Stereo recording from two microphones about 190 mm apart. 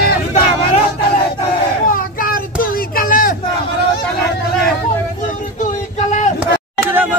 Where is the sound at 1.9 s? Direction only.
45° left (ahead or behind).